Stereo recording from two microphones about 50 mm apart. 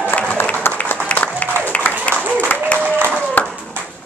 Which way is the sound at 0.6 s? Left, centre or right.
Left.